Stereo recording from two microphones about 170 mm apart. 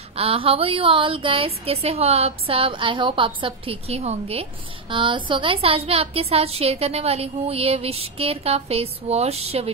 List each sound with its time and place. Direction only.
0.1 s a woman's voice: 35° right (ahead or behind)